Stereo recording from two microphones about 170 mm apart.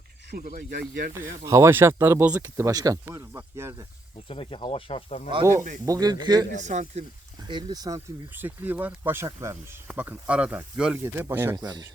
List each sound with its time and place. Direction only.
0.3 s speech: 60° right (ahead or behind); by 1.1 s 80° right
1.1 s speech: 15° right (ahead or behind)
4.3 s speech: 30° left (ahead or behind)
5.4 s speech: 15° right (ahead or behind)
6.6 s speech: 45° right (ahead or behind)
7.4 s speech: 25° right (ahead or behind)
8.4 s speech: 10° right (ahead or behind)